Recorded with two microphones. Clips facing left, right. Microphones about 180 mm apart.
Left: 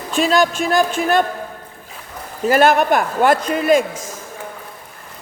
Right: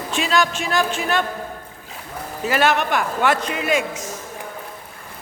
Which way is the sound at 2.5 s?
45° left (ahead or behind).